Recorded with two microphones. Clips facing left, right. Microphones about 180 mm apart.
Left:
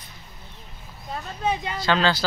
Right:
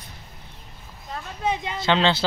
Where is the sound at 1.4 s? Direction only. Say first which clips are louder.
Even; 20° right (ahead or behind).